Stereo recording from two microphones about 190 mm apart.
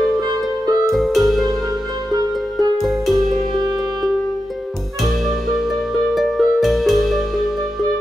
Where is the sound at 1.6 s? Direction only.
20° right (ahead or behind).